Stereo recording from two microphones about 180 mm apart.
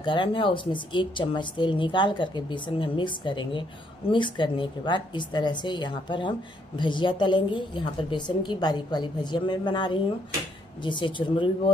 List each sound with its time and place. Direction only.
0.0 s speech: 25° left (ahead or behind)